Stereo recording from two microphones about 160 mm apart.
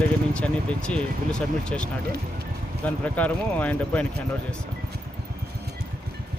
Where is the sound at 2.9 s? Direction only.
10° left (ahead or behind).